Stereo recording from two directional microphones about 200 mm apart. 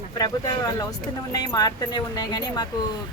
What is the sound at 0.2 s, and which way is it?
A woman's voice, 20° left (ahead or behind).